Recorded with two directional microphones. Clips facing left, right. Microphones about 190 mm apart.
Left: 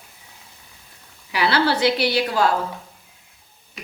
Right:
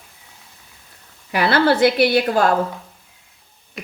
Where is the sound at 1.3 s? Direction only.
50° right (ahead or behind).